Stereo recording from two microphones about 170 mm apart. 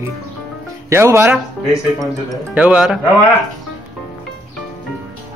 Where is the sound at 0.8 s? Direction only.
15° right (ahead or behind).